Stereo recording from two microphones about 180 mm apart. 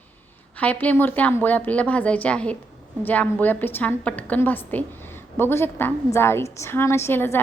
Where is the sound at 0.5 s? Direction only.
10° left (ahead or behind).